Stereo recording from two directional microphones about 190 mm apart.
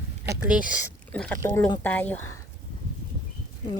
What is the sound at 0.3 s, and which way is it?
Speech, 5° right (ahead or behind).